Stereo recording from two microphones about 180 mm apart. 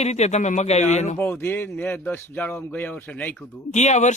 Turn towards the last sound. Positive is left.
turn(degrees=40)  # may be behind; listen again after turning